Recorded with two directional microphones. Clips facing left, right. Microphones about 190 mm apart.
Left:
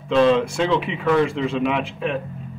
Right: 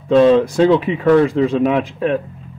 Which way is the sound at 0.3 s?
40° right (ahead or behind).